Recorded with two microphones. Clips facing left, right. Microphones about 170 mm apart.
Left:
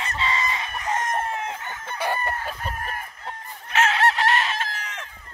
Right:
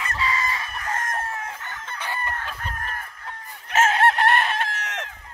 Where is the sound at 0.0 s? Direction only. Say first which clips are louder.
Even; 25° left (ahead or behind); by 3.1 s 10° left (ahead or behind).